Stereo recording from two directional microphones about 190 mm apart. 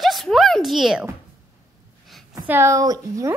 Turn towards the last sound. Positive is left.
turn(degrees=-20)  # may be behind; listen again after turning